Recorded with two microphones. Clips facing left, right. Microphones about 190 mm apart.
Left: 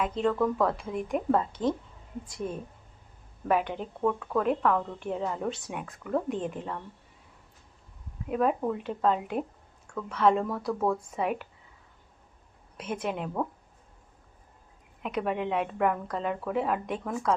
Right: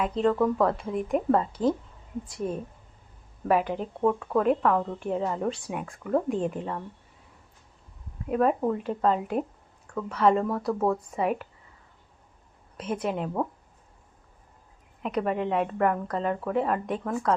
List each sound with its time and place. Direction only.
0.0 s speech: centre (ahead or behind)
8.3 s speech: centre (ahead or behind)
12.7 s speech: 5° left (ahead or behind)
15.0 s speech: centre (ahead or behind)